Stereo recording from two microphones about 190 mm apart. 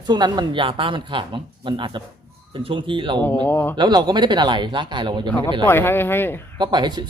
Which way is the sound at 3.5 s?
10° left (ahead or behind).